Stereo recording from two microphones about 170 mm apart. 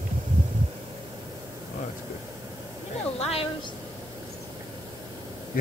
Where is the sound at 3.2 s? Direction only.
35° left (ahead or behind).